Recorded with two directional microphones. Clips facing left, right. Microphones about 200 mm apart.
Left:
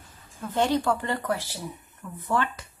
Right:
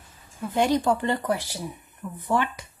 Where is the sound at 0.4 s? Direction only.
10° right (ahead or behind).